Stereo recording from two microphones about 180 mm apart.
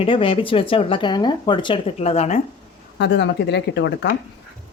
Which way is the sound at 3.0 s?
75° left (ahead or behind).